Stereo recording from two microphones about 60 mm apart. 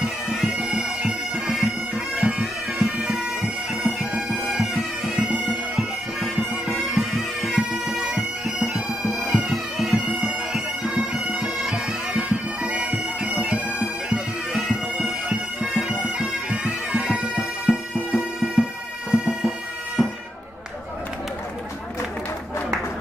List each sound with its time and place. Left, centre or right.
0.0 s bagpipes: centre
20.0 s music: centre